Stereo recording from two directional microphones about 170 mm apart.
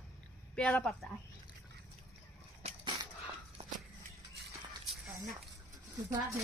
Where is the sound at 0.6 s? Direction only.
5° left (ahead or behind).